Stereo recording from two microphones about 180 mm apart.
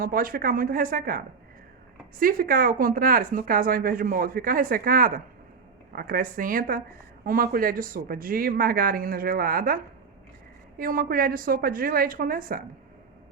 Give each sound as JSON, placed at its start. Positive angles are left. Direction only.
{"t": 0.0, "sound": "speech", "side_deg": -55}
{"t": 10.8, "sound": "speech", "side_deg": -50}